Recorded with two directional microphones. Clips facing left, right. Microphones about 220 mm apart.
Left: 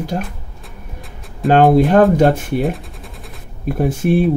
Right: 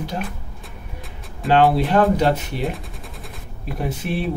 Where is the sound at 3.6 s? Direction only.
45° left (ahead or behind).